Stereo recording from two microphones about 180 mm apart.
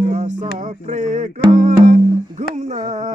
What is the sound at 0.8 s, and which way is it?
Music, 40° right (ahead or behind).